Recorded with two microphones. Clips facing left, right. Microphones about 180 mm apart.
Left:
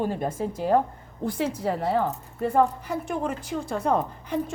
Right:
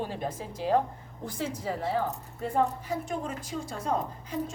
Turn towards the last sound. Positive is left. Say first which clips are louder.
# left 6 dB
turn(degrees=65)  # may be behind; listen again after turning